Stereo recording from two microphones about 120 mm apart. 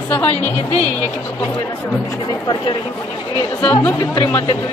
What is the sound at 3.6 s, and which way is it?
Speech, 15° left (ahead or behind).